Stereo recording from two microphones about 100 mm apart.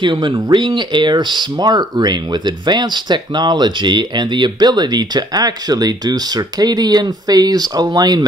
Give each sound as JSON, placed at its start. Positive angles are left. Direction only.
{"t": 0.0, "sound": "speech", "side_deg": -50}